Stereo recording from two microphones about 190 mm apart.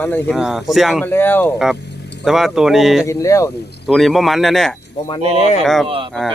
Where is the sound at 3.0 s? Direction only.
15° left (ahead or behind).